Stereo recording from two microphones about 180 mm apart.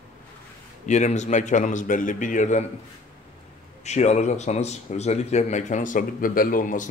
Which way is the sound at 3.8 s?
40° left (ahead or behind).